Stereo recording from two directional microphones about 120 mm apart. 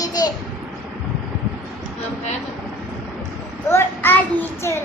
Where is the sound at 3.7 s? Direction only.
20° left (ahead or behind).